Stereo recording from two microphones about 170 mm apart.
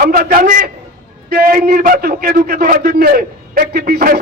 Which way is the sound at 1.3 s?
60° right (ahead or behind).